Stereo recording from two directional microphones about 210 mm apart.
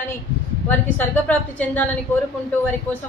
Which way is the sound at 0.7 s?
10° left (ahead or behind).